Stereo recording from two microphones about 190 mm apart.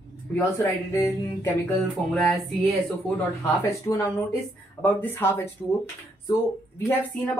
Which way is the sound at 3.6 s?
15° left (ahead or behind).